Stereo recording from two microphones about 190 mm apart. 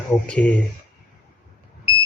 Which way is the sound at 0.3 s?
5° left (ahead or behind).